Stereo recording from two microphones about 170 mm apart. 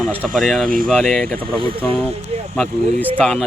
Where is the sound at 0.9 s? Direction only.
Centre (ahead or behind).